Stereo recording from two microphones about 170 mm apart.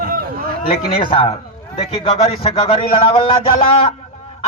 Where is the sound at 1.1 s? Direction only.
35° left (ahead or behind).